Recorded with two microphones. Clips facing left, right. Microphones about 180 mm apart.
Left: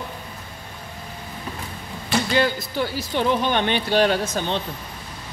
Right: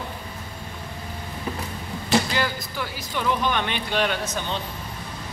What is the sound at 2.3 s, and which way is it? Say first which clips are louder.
Speech: left 6 dB; 30° left (ahead or behind).